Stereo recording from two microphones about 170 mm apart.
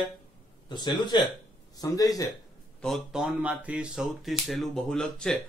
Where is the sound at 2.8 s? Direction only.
5° left (ahead or behind).